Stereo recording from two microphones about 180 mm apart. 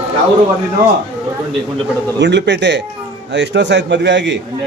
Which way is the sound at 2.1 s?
75° right (ahead or behind).